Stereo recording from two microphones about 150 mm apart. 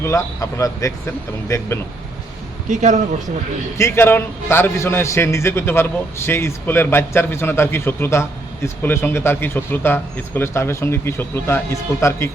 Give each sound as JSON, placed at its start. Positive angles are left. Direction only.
{"t": 0.0, "sound": "speech", "side_deg": 20}
{"t": 2.6, "sound": "speech", "side_deg": -55}
{"t": 3.8, "sound": "a man's voice", "side_deg": 15}